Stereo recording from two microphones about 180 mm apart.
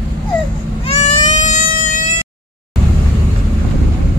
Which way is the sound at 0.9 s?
40° left (ahead or behind).